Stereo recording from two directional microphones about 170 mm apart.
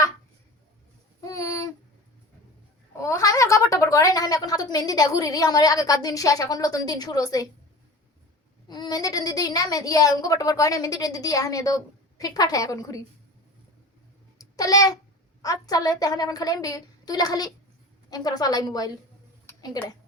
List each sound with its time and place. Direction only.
1.2 s a sound: 20° left (ahead or behind)
3.0 s a woman's voice: 20° left (ahead or behind)
8.6 s a woman's voice: 25° left (ahead or behind)
14.3 s babbling: 20° left (ahead or behind)
15.4 s a woman's voice: 20° left (ahead or behind)